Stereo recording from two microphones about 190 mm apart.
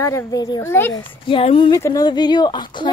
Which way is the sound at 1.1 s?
30° left (ahead or behind).